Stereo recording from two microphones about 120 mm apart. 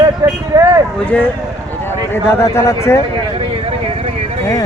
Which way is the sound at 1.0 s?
10° left (ahead or behind).